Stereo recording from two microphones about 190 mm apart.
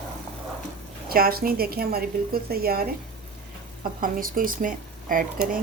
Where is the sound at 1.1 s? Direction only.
50° right (ahead or behind).